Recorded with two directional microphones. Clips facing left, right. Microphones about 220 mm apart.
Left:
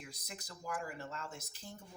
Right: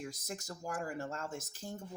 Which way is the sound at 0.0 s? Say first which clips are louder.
Right 8 dB; 45° right (ahead or behind).